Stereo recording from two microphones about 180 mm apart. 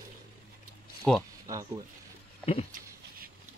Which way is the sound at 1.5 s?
20° right (ahead or behind).